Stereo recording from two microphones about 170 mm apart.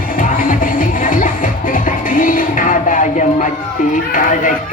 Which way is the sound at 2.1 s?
55° left (ahead or behind).